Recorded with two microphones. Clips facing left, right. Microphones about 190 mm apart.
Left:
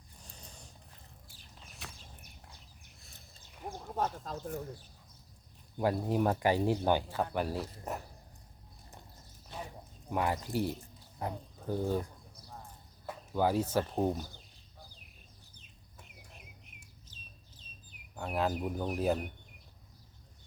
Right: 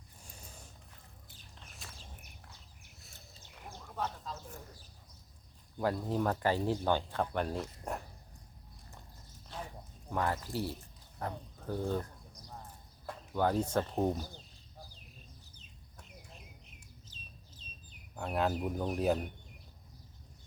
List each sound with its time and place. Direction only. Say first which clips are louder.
1.8 s a sound: left 4 dB; 65° left (ahead or behind)
3.8 s a sound: left 4 dB; 45° left (ahead or behind)
5.7 s speech: left 2 dB; 15° left (ahead or behind)
10.1 s speech: left 2 dB; 15° left (ahead or behind)
11.2 s bird: left 1 dB; 15° left (ahead or behind)
13.1 s speech: left 1 dB; 5° left (ahead or behind)
18.2 s speech: even; centre (ahead or behind)